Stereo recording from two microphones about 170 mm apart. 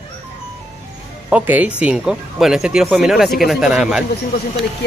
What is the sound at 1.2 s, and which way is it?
Speech, 10° right (ahead or behind).